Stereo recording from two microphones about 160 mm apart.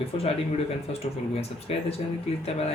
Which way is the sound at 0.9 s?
40° left (ahead or behind).